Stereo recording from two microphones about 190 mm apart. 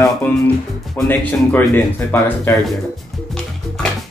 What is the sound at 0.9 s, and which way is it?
Speech, 10° left (ahead or behind).